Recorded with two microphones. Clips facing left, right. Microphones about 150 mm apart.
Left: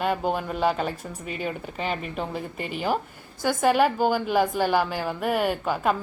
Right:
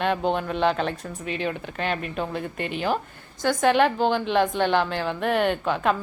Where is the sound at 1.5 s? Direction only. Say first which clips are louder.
Even; 10° left (ahead or behind).